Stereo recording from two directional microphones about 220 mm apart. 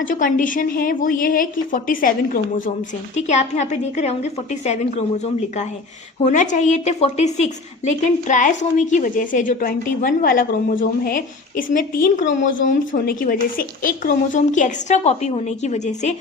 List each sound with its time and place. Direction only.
0.0 s a woman's voice: 35° left (ahead or behind)